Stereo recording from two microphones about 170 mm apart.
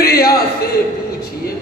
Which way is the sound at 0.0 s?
65° left (ahead or behind).